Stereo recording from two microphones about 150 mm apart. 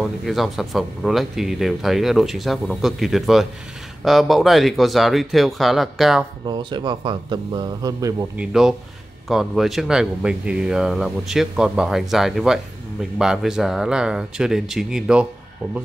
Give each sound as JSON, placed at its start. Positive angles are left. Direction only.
{"t": 0.2, "sound": "speech", "side_deg": 0}
{"t": 6.4, "sound": "a man's voice", "side_deg": -30}
{"t": 8.4, "sound": "speech", "side_deg": 0}